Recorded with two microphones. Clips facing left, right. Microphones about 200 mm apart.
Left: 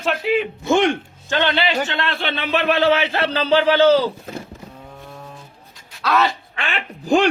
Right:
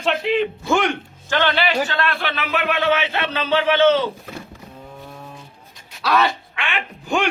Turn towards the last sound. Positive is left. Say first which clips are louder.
# left 5 dB
turn(degrees=35)  # may be behind; listen again after turning